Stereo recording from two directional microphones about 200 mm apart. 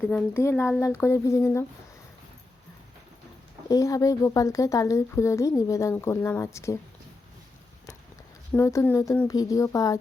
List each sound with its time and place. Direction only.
0.0 s speech: 10° left (ahead or behind)
3.7 s speech: 15° left (ahead or behind)
8.5 s speech: 15° left (ahead or behind)